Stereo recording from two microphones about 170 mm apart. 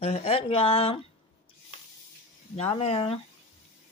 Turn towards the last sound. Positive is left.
turn(degrees=35)  # may be behind; listen again after turning